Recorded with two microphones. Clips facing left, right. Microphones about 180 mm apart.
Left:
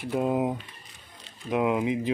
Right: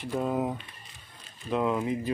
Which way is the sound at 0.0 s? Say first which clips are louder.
Left 3 dB; 15° left (ahead or behind).